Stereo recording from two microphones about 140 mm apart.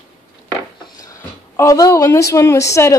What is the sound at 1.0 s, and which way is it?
A woman's voice, 20° left (ahead or behind).